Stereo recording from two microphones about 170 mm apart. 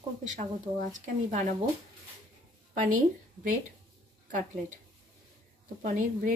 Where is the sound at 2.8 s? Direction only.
50° right (ahead or behind).